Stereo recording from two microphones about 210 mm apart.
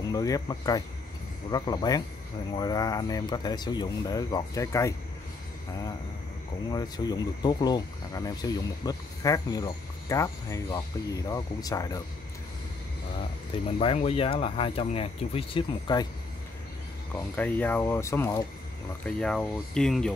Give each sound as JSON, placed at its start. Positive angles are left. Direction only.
{"t": 0.0, "sound": "speech", "side_deg": 15}
{"t": 6.7, "sound": "speech", "side_deg": 20}
{"t": 13.7, "sound": "speech", "side_deg": 25}
{"t": 17.1, "sound": "speech", "side_deg": 10}